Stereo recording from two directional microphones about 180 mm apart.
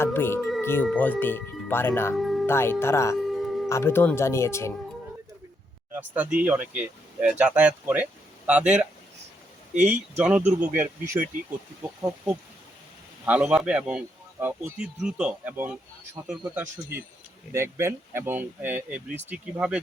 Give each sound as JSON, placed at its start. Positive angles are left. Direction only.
{"t": 0.0, "sound": "music", "side_deg": 15}
{"t": 0.6, "sound": "speech", "side_deg": 15}
{"t": 2.1, "sound": "music", "side_deg": 0}
{"t": 2.5, "sound": "speech", "side_deg": 15}
{"t": 3.2, "sound": "music", "side_deg": 0}
{"t": 3.7, "sound": "speech", "side_deg": 15}
{"t": 5.9, "sound": "a man's voice", "side_deg": -10}